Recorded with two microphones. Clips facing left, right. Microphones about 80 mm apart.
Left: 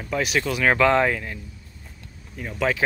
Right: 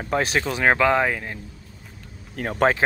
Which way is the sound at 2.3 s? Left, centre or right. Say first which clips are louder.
Right 6 dB; right.